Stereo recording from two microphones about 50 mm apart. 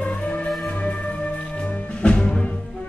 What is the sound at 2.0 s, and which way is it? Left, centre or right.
Music, left.